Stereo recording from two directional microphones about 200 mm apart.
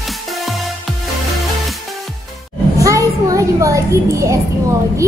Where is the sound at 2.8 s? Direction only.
15° right (ahead or behind).